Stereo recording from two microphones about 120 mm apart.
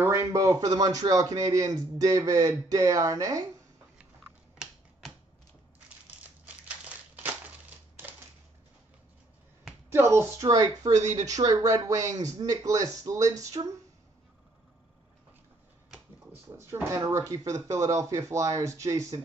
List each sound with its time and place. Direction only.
0.0 s speech: 25° right (ahead or behind)
6.2 s crumpling: 15° right (ahead or behind)
9.9 s speech: 20° right (ahead or behind)
10.8 s speech: 80° right
11.1 s speech: 30° right (ahead or behind)
16.5 s speech: 20° right (ahead or behind)